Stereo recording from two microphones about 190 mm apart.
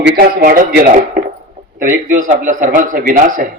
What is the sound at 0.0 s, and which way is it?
Speech, 55° right (ahead or behind).